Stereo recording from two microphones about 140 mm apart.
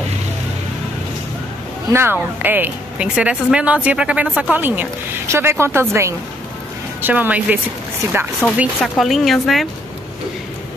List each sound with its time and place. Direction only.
1.9 s speech: 20° right (ahead or behind)
8.8 s a woman's voice: centre (ahead or behind)